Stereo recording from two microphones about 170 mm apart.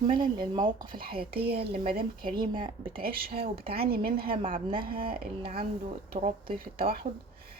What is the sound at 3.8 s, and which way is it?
Speech, 65° right (ahead or behind).